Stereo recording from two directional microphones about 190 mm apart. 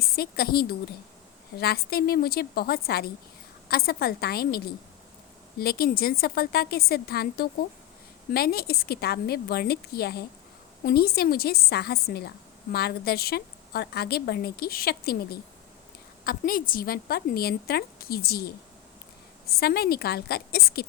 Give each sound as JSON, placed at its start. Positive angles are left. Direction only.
{"t": 0.0, "sound": "a woman's voice", "side_deg": 55}